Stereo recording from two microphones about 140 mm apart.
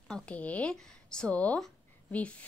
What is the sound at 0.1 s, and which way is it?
A woman's voice, 10° left (ahead or behind).